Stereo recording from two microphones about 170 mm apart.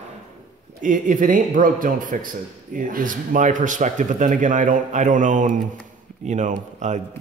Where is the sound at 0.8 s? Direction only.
50° right (ahead or behind).